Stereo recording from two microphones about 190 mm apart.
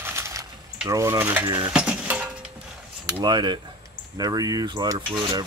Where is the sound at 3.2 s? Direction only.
25° right (ahead or behind).